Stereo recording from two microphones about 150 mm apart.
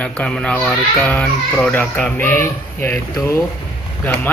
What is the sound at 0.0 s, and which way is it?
Speech, 5° left (ahead or behind).